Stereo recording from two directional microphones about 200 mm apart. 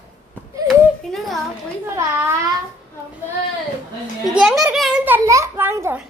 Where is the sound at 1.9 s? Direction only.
10° right (ahead or behind).